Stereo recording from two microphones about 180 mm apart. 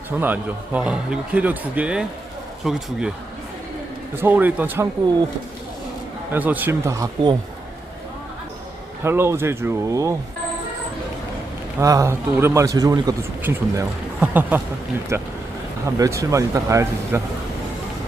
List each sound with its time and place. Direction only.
0.2 s speech: 10° right (ahead or behind)
4.1 s speech: 10° right (ahead or behind)
6.3 s speech: 10° right (ahead or behind)
9.0 s speech: 15° right (ahead or behind)
11.8 s speech: 15° right (ahead or behind)